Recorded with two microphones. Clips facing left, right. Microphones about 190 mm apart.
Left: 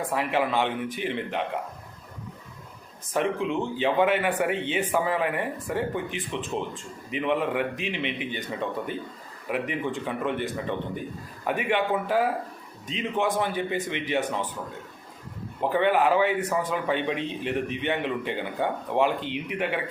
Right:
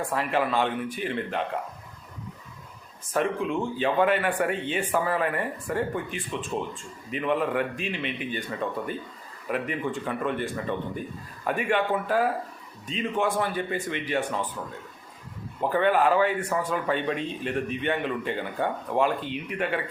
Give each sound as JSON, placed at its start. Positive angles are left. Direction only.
{"t": 0.1, "sound": "speech", "side_deg": 10}
{"t": 3.1, "sound": "speech", "side_deg": 15}
{"t": 11.4, "sound": "speech", "side_deg": 15}
{"t": 15.7, "sound": "speech", "side_deg": 15}